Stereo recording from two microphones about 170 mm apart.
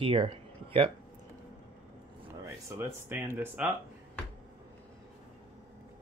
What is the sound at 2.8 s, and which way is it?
Speech, 10° right (ahead or behind).